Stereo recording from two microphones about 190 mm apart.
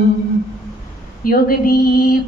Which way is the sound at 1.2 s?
50° left (ahead or behind).